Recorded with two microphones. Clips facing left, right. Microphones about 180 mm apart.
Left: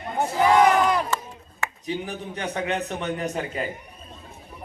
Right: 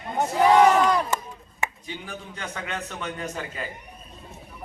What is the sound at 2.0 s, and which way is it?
A man's voice, 30° left (ahead or behind).